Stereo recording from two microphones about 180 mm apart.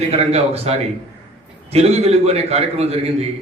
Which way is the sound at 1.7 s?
35° right (ahead or behind).